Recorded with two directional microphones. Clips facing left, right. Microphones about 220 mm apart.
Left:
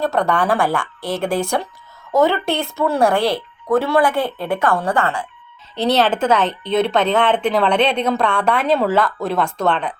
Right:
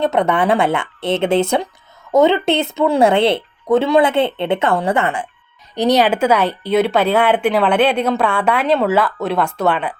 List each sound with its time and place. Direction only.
0.0 s speech: 20° right (ahead or behind)